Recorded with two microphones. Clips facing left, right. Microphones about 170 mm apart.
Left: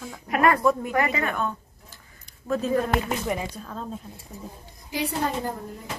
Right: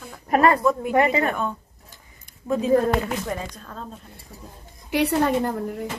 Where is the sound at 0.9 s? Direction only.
30° right (ahead or behind).